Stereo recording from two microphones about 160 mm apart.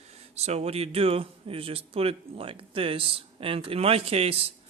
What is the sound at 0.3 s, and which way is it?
Speech, 40° right (ahead or behind).